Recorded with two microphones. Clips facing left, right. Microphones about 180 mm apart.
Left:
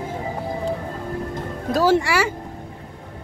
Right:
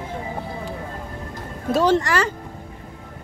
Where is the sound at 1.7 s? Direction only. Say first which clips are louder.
Even; 5° left (ahead or behind).